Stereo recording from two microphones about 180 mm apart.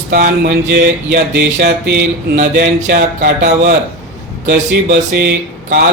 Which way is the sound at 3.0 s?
55° right (ahead or behind).